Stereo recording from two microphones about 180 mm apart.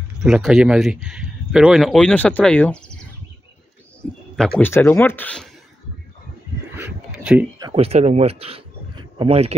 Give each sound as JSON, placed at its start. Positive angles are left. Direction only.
{"t": 0.2, "sound": "speech", "side_deg": 0}
{"t": 4.4, "sound": "speech", "side_deg": 10}
{"t": 6.8, "sound": "a sound", "side_deg": -5}
{"t": 7.7, "sound": "speech", "side_deg": -35}